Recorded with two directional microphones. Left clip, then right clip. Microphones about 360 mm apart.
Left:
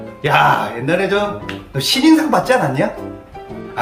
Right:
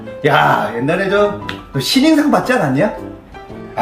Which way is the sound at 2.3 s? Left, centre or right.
Centre.